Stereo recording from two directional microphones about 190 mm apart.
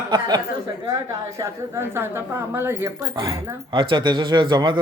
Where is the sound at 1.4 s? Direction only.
15° right (ahead or behind).